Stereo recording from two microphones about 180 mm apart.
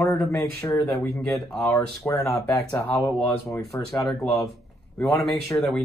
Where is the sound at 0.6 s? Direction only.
20° left (ahead or behind).